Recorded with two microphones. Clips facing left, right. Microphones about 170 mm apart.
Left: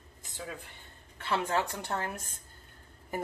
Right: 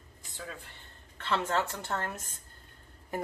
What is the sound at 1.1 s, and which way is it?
Speech, 10° left (ahead or behind).